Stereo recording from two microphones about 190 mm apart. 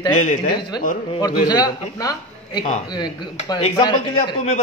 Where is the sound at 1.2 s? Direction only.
20° left (ahead or behind).